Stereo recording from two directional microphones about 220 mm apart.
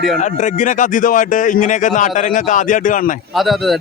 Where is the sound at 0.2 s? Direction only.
35° left (ahead or behind).